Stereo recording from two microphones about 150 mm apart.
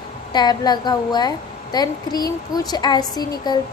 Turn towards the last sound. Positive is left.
turn(degrees=25)  # may be behind; listen again after turning